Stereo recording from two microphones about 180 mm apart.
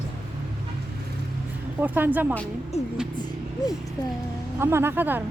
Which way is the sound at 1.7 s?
10° right (ahead or behind).